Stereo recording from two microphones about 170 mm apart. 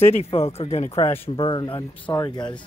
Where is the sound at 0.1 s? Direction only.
35° left (ahead or behind).